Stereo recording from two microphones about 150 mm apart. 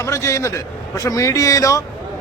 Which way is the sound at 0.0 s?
20° left (ahead or behind).